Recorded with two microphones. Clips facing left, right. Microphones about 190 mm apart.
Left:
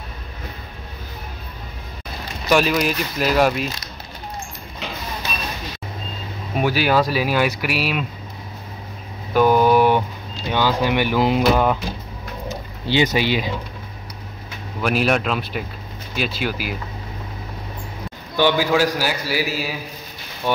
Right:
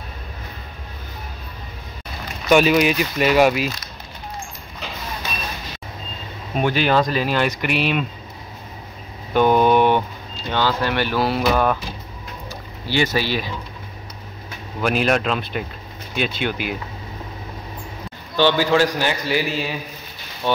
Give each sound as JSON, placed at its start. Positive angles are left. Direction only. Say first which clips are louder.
{"t": 2.5, "sound": "speech", "louder": "right 3 dB", "side_deg": 0}
{"t": 6.5, "sound": "speech", "louder": "even", "side_deg": 5}
{"t": 9.3, "sound": "a sound", "louder": "even", "side_deg": 5}
{"t": 10.5, "sound": "speech", "louder": "left 2 dB", "side_deg": 15}
{"t": 12.4, "sound": "a sound", "louder": "left 5 dB", "side_deg": 20}
{"t": 14.8, "sound": "speech", "louder": "even", "side_deg": 5}
{"t": 18.3, "sound": "speech", "louder": "right 1 dB", "side_deg": 10}